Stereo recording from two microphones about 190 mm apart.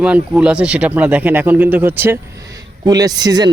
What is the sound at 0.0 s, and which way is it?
A man's voice, 5° right (ahead or behind).